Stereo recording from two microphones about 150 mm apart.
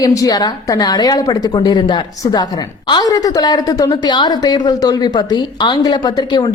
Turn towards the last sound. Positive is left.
turn(degrees=30)  # may be behind; listen again after turning